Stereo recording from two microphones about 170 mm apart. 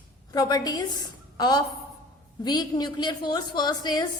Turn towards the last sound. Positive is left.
turn(degrees=25)  # may be behind; listen again after turning